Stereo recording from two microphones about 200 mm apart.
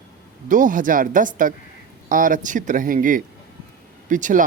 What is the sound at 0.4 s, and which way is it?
Speech, 40° right (ahead or behind).